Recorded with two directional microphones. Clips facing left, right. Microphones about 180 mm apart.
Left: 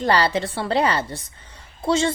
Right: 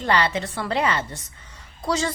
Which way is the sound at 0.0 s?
35° left (ahead or behind).